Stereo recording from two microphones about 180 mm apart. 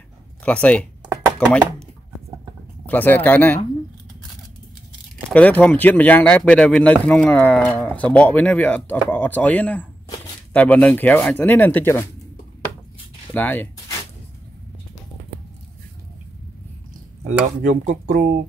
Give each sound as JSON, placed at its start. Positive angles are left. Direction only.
{"t": 0.4, "sound": "speech", "side_deg": 5}
{"t": 2.9, "sound": "speech", "side_deg": 10}
{"t": 5.3, "sound": "speech", "side_deg": 5}
{"t": 13.3, "sound": "a sound", "side_deg": 10}
{"t": 17.3, "sound": "speech", "side_deg": -45}